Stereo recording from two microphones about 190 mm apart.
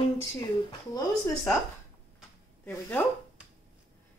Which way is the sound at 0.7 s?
20° left (ahead or behind).